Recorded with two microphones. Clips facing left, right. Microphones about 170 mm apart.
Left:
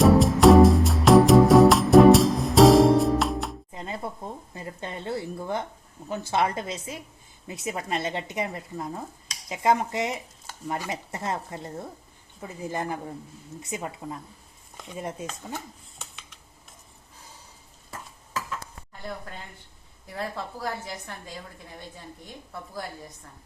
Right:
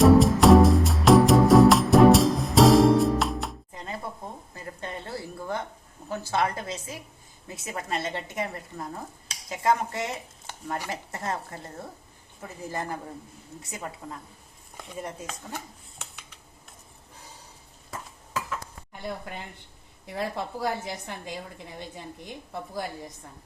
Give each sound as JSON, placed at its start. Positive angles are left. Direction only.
{"t": 0.0, "sound": "music", "side_deg": 0}
{"t": 3.7, "sound": "chopping", "side_deg": 20}
{"t": 4.5, "sound": "a sound", "side_deg": 25}
{"t": 6.1, "sound": "a woman's voice", "side_deg": 20}
{"t": 19.0, "sound": "a woman's voice", "side_deg": -15}